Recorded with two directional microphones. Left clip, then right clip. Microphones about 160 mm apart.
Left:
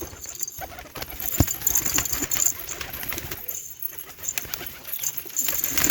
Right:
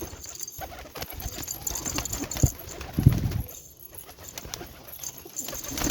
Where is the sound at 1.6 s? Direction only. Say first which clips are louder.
Left 3 dB; 5° left (ahead or behind).